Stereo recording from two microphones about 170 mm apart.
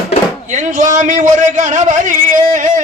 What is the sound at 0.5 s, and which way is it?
A man's voice, 45° right (ahead or behind).